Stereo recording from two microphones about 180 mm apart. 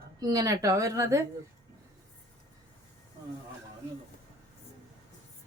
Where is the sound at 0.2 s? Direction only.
20° right (ahead or behind).